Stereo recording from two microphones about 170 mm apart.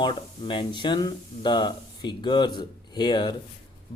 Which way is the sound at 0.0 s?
25° left (ahead or behind).